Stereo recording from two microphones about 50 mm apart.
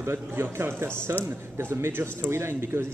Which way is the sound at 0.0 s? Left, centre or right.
Right.